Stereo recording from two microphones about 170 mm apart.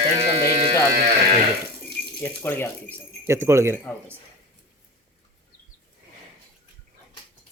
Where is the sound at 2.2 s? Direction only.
10° left (ahead or behind).